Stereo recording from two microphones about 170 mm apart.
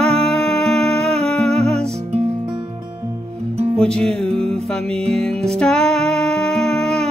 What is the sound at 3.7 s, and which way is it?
Music, 5° left (ahead or behind).